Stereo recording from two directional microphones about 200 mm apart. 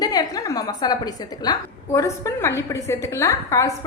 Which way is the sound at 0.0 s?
20° left (ahead or behind).